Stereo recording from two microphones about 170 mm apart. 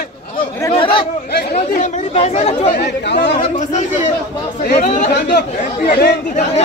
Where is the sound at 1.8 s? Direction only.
40° left (ahead or behind).